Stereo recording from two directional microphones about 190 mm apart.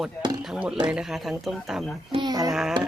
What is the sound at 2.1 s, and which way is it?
Speech, 25° right (ahead or behind).